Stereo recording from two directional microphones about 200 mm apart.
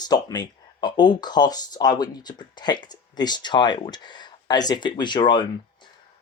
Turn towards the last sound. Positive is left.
turn(degrees=25)  # may be behind; listen again after turning